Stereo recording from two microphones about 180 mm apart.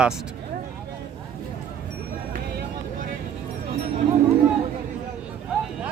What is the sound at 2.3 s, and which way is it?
Vehicle, 55° right (ahead or behind).